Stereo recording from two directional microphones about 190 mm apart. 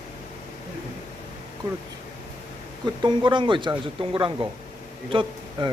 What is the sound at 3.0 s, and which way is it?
A man's voice, 25° right (ahead or behind).